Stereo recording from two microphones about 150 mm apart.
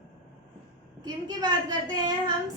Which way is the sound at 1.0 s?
30° right (ahead or behind).